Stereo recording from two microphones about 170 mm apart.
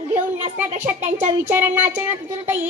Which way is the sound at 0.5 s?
10° right (ahead or behind).